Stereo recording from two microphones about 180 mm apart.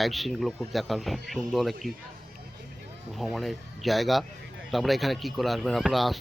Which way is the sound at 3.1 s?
Centre (ahead or behind).